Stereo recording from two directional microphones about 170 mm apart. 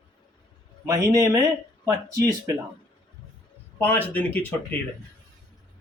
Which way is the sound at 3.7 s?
10° left (ahead or behind).